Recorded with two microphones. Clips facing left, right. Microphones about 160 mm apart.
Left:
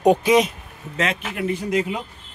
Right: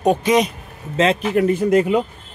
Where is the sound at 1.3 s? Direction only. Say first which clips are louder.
Right 8 dB; 50° right (ahead or behind).